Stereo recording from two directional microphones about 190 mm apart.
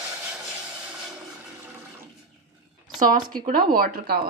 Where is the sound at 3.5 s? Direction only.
50° right (ahead or behind).